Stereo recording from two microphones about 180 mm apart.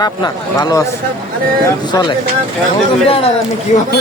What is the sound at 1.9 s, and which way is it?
Speech, 25° left (ahead or behind).